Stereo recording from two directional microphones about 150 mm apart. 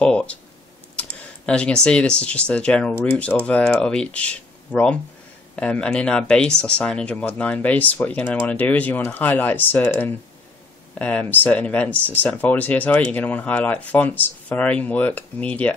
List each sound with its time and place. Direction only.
0.0 s speech: 5° left (ahead or behind)